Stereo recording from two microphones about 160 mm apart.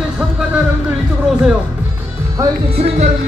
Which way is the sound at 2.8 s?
40° right (ahead or behind).